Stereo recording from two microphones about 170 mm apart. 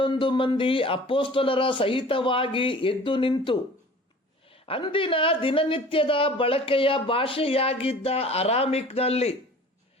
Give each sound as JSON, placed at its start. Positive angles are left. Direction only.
{"t": 0.0, "sound": "a man's voice", "side_deg": 30}